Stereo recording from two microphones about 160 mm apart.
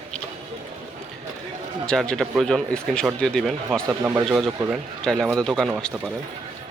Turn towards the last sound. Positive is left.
turn(degrees=5)  # may be behind; listen again after turning